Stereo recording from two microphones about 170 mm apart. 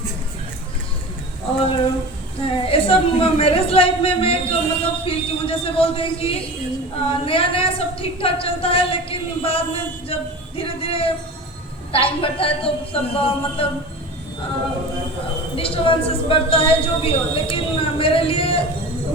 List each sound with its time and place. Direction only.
2.4 s a woman's voice: 35° left (ahead or behind)
15.5 s a woman's voice: 35° left (ahead or behind)